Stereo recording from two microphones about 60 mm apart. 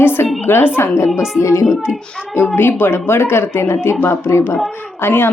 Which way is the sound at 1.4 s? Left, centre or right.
Left.